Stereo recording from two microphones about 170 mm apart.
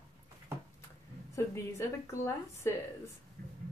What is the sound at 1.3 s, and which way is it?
A woman's voice, 15° left (ahead or behind).